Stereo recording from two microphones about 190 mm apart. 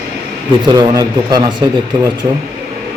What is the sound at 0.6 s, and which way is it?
Speech, 20° right (ahead or behind).